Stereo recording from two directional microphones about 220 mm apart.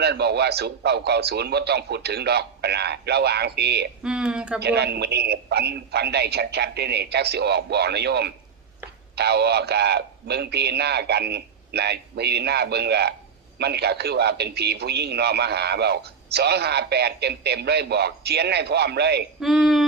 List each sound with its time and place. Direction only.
0.0 s a man's voice: 50° right (ahead or behind)
4.0 s speech: 5° right (ahead or behind)
4.6 s a man's voice: 50° right (ahead or behind)
19.4 s speech: centre (ahead or behind)